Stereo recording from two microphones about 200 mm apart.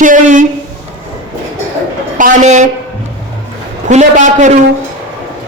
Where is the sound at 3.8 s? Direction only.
35° right (ahead or behind).